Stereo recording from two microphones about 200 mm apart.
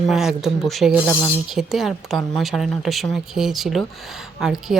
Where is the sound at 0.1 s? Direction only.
Centre (ahead or behind).